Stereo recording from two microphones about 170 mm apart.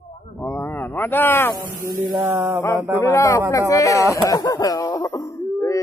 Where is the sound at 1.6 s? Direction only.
20° right (ahead or behind).